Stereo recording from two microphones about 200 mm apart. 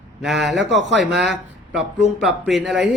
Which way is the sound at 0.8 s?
65° right (ahead or behind).